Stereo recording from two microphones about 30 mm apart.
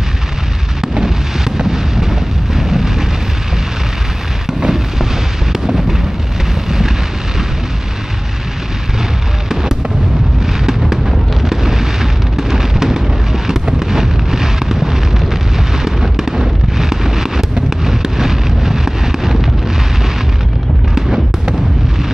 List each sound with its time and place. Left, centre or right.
0.7 s artillery fire: centre
4.5 s a sound: centre
9.5 s fireworks: centre
11.1 s a sound: centre
17.6 s explosion: centre
20.9 s fireworks: centre